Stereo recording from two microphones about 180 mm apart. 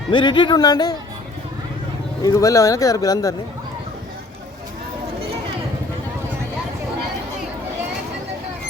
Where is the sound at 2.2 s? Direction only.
20° left (ahead or behind).